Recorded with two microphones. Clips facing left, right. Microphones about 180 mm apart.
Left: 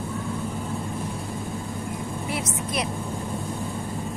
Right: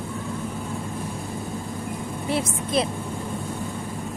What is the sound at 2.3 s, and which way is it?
Vehicle, 30° right (ahead or behind).